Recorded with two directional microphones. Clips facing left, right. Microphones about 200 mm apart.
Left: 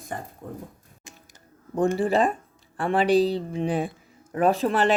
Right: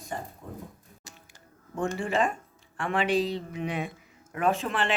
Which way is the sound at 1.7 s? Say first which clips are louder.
Left 6 dB; 35° left (ahead or behind).